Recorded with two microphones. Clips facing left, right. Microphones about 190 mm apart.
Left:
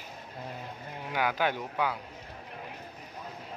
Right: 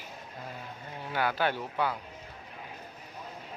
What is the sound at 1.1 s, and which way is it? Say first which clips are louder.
Speech: even; 15° left (ahead or behind).